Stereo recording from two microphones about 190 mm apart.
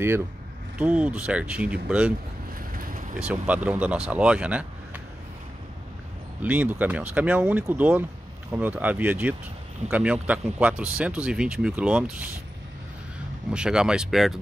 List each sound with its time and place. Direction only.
0.7 s speech: 5° right (ahead or behind)
2.7 s vehicle: 45° right (ahead or behind)
3.2 s speech: 5° right (ahead or behind)
6.4 s speech: 10° right (ahead or behind)
13.5 s speech: 5° right (ahead or behind)